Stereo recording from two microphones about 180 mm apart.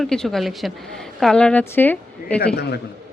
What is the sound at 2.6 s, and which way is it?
Speech, 65° left (ahead or behind).